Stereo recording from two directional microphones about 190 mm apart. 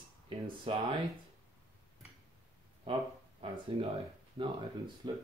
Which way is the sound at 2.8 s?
30° right (ahead or behind).